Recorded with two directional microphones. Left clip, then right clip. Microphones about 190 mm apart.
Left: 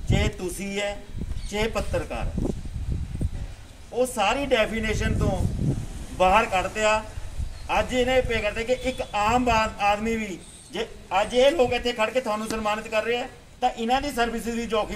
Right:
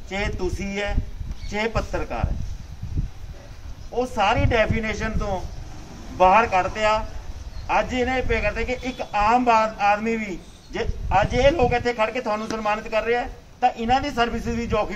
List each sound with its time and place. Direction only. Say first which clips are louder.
0.1 s speech: right 1 dB; 15° left (ahead or behind)
3.9 s speech: right 2 dB; 20° left (ahead or behind)
6.1 s speech: right 4 dB; 15° left (ahead or behind)